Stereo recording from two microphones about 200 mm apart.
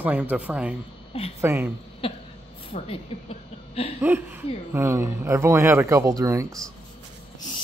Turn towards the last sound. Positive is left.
turn(degrees=-15)  # may be behind; listen again after turning